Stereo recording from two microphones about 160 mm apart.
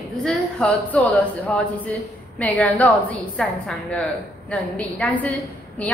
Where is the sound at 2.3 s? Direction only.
10° left (ahead or behind).